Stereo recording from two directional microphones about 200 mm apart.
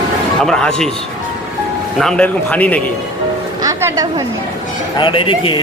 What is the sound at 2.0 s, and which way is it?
Speech, 5° left (ahead or behind).